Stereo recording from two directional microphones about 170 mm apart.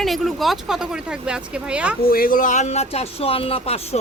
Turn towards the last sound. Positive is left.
turn(degrees=35)  # may be behind; listen again after turning